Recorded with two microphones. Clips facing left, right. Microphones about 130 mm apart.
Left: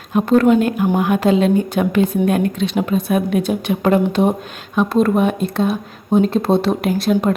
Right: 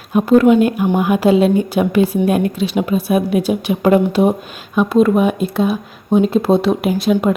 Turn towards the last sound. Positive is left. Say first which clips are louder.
# right 1 dB
turn(degrees=-5)  # may be behind; listen again after turning